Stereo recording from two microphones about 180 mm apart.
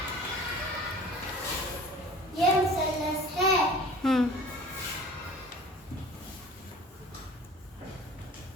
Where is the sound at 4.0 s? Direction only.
Centre (ahead or behind).